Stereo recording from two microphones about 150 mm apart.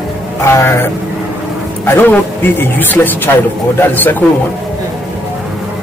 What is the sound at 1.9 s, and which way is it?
Speech, 10° left (ahead or behind).